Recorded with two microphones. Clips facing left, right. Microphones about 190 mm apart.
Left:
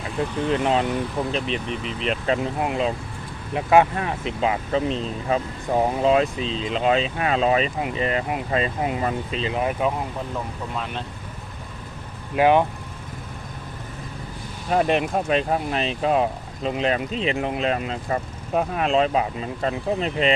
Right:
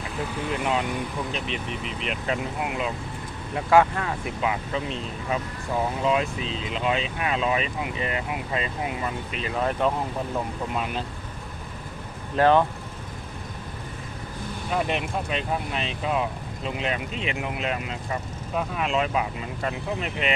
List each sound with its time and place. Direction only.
0.6 s speech: 35° left (ahead or behind)
3.5 s speech: 20° left (ahead or behind); by 9.1 s 40° left (ahead or behind)
9.3 s speech: 25° left (ahead or behind)
9.6 s speech: 10° left (ahead or behind)
10.8 s speech: 5° right (ahead or behind)
12.4 s speech: 15° left (ahead or behind)
14.7 s speech: 45° left (ahead or behind)